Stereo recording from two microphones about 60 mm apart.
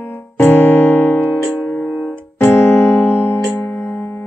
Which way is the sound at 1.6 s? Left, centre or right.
Left.